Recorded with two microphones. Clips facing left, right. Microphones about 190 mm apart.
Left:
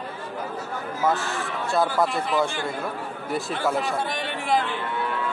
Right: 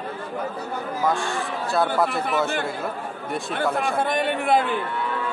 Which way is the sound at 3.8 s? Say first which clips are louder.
Right 5 dB; 55° right (ahead or behind).